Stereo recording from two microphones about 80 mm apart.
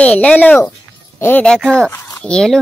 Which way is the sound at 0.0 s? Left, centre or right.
Centre.